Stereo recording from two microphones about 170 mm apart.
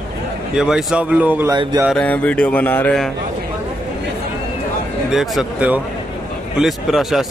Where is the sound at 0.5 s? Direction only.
5° right (ahead or behind).